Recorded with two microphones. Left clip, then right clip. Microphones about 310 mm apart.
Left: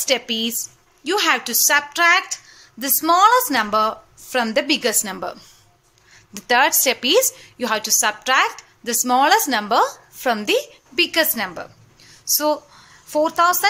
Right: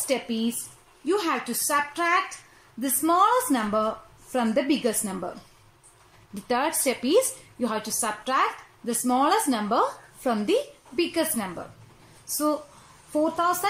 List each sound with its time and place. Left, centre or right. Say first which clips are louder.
0.0 s a woman's voice: left 7 dB; left
6.4 s a woman's voice: left 9 dB; left
13.4 s a woman's voice: left 10 dB; left